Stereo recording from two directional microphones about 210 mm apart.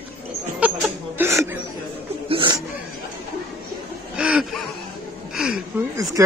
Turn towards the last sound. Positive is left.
turn(degrees=-15)  # may be behind; listen again after turning